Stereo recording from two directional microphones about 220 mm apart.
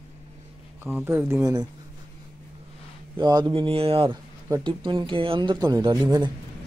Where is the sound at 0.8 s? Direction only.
10° right (ahead or behind).